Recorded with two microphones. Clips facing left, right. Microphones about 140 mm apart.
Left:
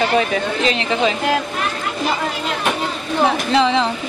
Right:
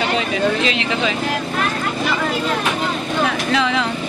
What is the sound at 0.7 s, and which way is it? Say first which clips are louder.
Speech: left 2 dB; 35° left (ahead or behind).